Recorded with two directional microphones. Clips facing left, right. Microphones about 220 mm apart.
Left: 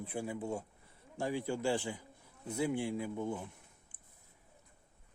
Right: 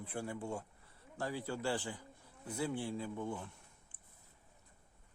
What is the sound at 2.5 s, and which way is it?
Speech, 10° left (ahead or behind).